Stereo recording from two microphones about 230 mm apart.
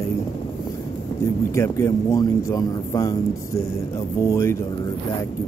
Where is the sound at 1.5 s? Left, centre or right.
Centre.